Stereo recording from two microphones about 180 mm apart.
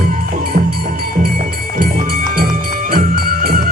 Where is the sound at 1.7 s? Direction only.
50° right (ahead or behind).